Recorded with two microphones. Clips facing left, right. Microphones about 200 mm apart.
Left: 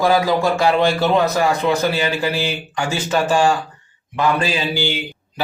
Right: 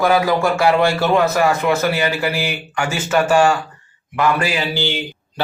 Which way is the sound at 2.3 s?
15° right (ahead or behind).